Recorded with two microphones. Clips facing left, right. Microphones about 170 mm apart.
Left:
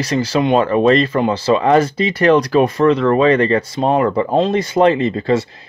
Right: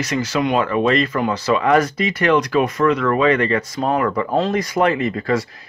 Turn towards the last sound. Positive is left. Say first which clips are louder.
# left 4 dB
turn(degrees=25)  # may be behind; listen again after turning